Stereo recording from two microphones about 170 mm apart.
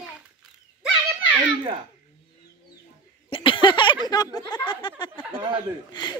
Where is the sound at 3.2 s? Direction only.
30° left (ahead or behind).